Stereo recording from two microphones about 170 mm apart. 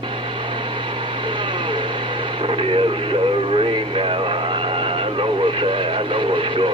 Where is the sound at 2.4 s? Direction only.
30° right (ahead or behind).